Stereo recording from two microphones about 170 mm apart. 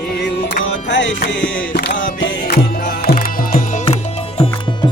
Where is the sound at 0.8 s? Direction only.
90° left.